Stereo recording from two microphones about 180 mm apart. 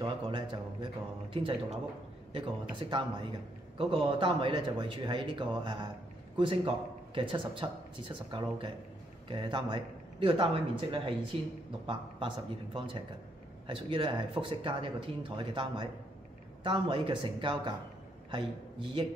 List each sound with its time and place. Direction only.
0.0 s a man's voice: 25° right (ahead or behind)